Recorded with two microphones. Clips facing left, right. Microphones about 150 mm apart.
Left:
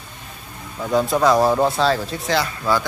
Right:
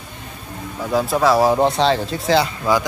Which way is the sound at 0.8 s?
5° right (ahead or behind).